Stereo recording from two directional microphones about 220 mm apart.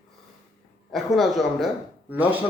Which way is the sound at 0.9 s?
Centre (ahead or behind).